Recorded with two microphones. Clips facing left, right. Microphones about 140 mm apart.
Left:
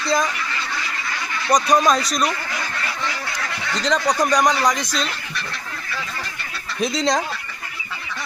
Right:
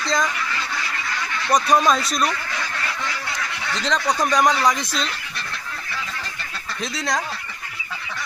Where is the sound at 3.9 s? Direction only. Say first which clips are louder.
Left 2 dB; centre (ahead or behind).